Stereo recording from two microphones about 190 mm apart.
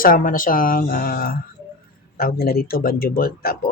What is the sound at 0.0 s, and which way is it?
Speech, 45° left (ahead or behind).